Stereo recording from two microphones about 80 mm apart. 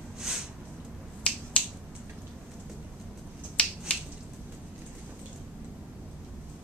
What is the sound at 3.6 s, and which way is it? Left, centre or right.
Finger snapping, centre.